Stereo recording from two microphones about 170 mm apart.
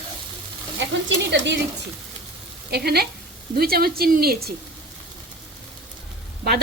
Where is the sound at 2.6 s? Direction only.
70° right (ahead or behind).